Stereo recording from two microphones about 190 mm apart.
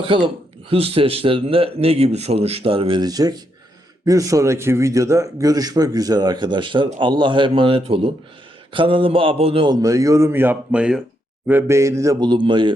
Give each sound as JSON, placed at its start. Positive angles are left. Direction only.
{"t": 0.0, "sound": "a man's voice", "side_deg": -25}